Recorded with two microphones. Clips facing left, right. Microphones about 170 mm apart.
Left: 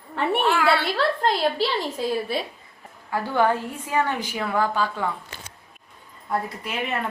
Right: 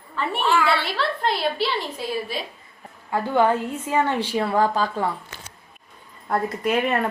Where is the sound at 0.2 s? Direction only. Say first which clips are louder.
Even; 60° left (ahead or behind); by 1.6 s 45° left (ahead or behind).